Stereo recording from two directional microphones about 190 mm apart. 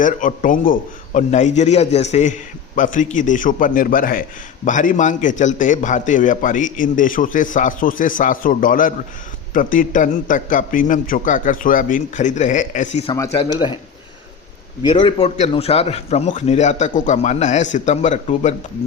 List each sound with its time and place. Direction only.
0.0 s a man's voice: 45° left (ahead or behind)
13.4 s speech: 25° left (ahead or behind)
14.8 s a man's voice: 25° left (ahead or behind)